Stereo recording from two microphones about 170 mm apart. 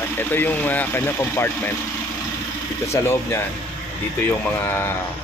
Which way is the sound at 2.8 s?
15° left (ahead or behind).